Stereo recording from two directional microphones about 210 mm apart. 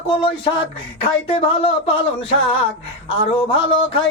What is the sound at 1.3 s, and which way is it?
Music, 30° left (ahead or behind).